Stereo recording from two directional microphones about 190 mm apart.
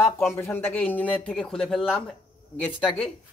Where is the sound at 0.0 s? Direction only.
15° left (ahead or behind).